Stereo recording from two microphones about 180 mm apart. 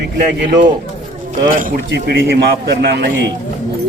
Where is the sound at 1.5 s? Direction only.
50° right (ahead or behind).